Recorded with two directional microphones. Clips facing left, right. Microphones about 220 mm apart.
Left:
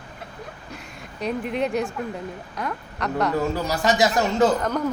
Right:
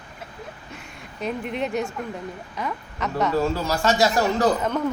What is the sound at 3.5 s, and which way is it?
Speech, 15° left (ahead or behind).